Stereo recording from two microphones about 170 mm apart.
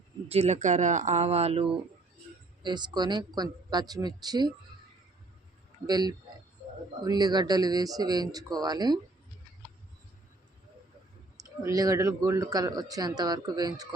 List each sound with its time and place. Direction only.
0.3 s speech: 40° right (ahead or behind)
2.6 s speech: 25° right (ahead or behind)
5.8 s speech: 25° right (ahead or behind)
11.4 s speech: 20° right (ahead or behind)